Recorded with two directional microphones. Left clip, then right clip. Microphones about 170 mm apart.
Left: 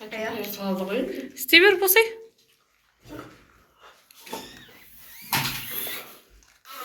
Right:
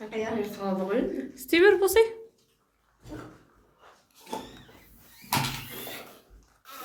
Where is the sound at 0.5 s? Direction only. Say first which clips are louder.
Left 1 dB; 55° right (ahead or behind).